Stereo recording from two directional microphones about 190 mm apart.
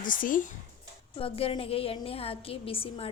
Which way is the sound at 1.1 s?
30° left (ahead or behind).